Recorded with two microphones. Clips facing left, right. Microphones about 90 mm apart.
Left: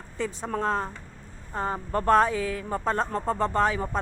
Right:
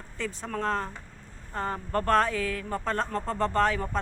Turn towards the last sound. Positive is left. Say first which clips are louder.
# left 1 dB
turn(degrees=10)  # may be behind; listen again after turning